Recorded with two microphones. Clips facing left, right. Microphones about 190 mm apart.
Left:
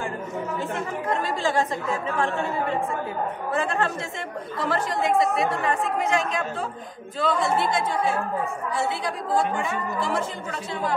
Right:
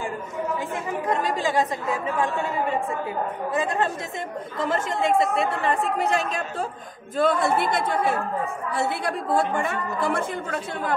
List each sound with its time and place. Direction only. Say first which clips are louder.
1.2 s a woman's voice: right 1 dB; 15° right (ahead or behind); by 6.4 s 35° right (ahead or behind)
7.2 s a woman's voice: right 2 dB; 55° right (ahead or behind)